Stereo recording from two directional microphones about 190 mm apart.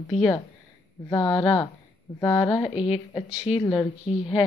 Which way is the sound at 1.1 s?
25° left (ahead or behind).